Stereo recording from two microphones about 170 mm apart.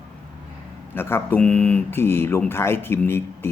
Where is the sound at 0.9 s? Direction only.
15° left (ahead or behind).